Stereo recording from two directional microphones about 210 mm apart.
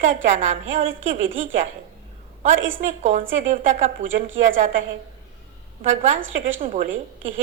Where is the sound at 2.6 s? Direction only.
65° right (ahead or behind).